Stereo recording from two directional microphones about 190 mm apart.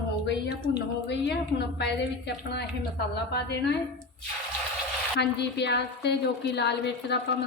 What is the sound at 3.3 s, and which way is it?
Speech, 60° left (ahead or behind).